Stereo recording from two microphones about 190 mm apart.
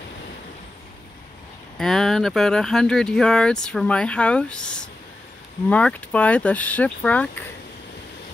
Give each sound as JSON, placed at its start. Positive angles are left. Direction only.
{"t": 1.8, "sound": "speech", "side_deg": 0}